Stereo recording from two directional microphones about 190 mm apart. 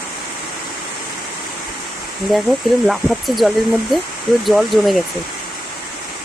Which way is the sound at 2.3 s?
Centre (ahead or behind).